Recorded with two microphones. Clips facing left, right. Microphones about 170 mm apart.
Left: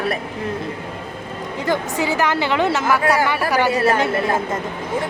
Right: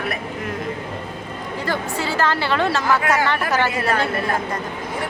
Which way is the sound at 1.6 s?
15° left (ahead or behind).